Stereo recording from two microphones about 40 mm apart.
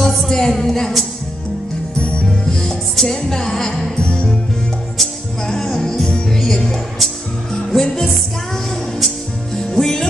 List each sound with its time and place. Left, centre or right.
0.0 s music: centre
2.0 s music: left
2.2 s music: centre
6.0 s music: left
6.3 s music: centre
9.8 s music: centre